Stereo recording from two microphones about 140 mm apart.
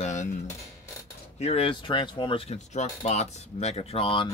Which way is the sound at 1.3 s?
45° left (ahead or behind).